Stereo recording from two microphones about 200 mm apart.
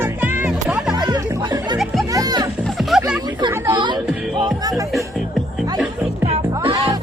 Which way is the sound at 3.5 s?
10° right (ahead or behind).